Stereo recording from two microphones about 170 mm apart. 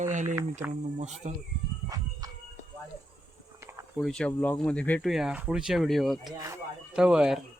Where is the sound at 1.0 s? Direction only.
40° right (ahead or behind).